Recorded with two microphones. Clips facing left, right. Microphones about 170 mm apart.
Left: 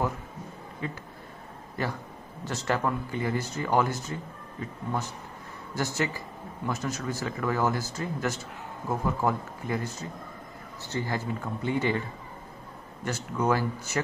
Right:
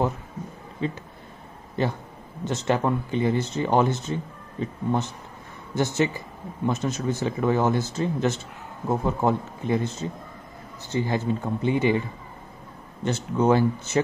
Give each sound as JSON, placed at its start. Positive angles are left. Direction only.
{"t": 0.8, "sound": "speech", "side_deg": -25}
{"t": 13.0, "sound": "speech", "side_deg": -25}